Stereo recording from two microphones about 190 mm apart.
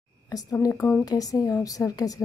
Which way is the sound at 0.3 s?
20° left (ahead or behind).